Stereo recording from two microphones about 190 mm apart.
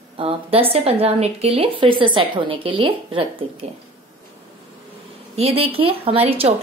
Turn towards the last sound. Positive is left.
turn(degrees=-30)  # may be behind; listen again after turning